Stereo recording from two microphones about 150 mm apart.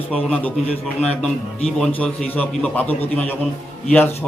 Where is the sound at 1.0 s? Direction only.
5° left (ahead or behind).